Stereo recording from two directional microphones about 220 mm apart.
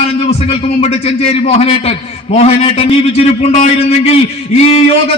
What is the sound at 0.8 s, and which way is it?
A man's voice, 25° left (ahead or behind).